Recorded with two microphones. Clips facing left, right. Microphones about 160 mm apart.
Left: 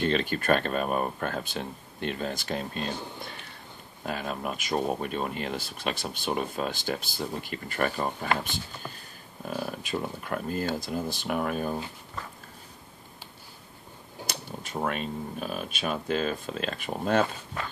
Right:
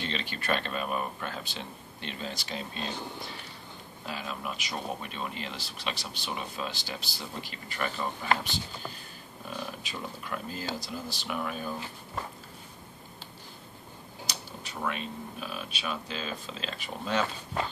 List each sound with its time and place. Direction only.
0.0 s speech: 50° left (ahead or behind)
4.0 s speech: 50° left (ahead or behind)
14.2 s speech: 50° left (ahead or behind)